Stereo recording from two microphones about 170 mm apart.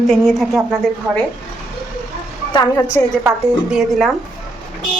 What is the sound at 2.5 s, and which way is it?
Speech, 25° left (ahead or behind).